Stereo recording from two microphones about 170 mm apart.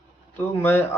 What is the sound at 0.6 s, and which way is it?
Speech, 15° left (ahead or behind).